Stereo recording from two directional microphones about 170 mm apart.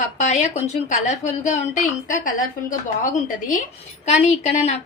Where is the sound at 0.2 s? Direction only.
45° left (ahead or behind).